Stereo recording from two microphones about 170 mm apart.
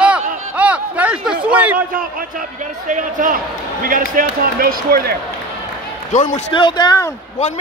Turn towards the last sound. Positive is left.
turn(degrees=25)  # may be behind; listen again after turning